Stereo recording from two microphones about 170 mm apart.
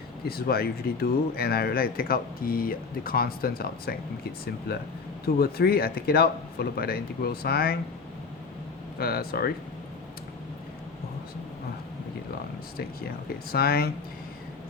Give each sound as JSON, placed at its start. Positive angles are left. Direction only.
{"t": 0.3, "sound": "speech", "side_deg": 65}
{"t": 9.0, "sound": "speech", "side_deg": 65}
{"t": 13.5, "sound": "speech", "side_deg": 65}